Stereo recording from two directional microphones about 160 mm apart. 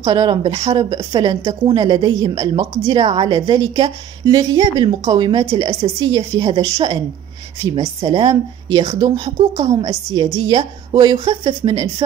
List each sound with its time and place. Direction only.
0.0 s a woman's voice: 25° right (ahead or behind)